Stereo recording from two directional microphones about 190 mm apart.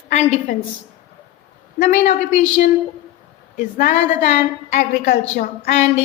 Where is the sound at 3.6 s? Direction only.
45° left (ahead or behind).